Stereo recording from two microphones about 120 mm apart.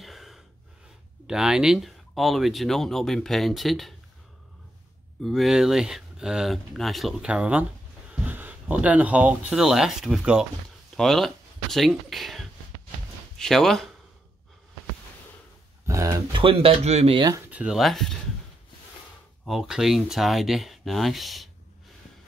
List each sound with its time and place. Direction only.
0.0 s gasp: centre (ahead or behind)
1.2 s speech: 5° right (ahead or behind)
5.2 s speech: centre (ahead or behind)
15.9 s speech: 25° right (ahead or behind)
16.3 s speech: 45° right (ahead or behind)
17.5 s speech: 10° right (ahead or behind)
19.4 s speech: 5° right (ahead or behind)